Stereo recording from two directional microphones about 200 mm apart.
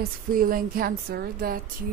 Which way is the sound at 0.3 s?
45° right (ahead or behind).